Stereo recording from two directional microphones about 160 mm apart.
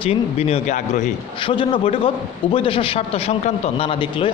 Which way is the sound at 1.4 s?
30° left (ahead or behind).